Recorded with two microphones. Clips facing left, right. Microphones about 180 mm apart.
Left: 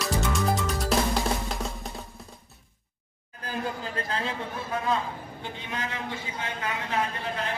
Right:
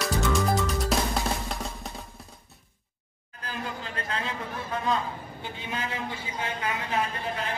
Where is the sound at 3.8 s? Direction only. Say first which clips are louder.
Left 2 dB; 35° left (ahead or behind).